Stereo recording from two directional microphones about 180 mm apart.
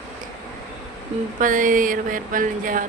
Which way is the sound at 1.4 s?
50° right (ahead or behind).